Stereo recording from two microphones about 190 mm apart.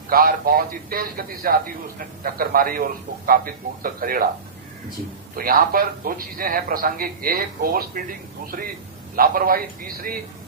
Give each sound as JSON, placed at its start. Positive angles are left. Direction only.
{"t": 0.1, "sound": "a man's voice", "side_deg": -50}
{"t": 5.4, "sound": "a man's voice", "side_deg": -50}